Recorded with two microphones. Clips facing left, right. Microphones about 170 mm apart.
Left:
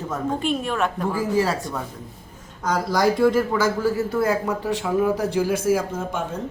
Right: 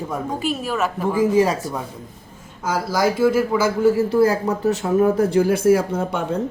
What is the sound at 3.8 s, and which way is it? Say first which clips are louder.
Speech: right 6 dB; 30° right (ahead or behind).